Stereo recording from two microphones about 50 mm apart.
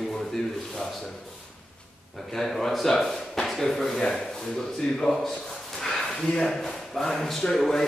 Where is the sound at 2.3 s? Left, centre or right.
Centre.